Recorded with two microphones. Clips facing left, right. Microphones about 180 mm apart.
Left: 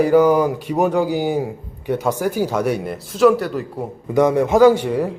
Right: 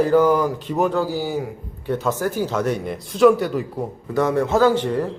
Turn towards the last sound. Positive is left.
turn(degrees=10)  # may be behind; listen again after turning